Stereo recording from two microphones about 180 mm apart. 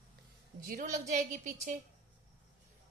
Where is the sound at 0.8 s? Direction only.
40° right (ahead or behind).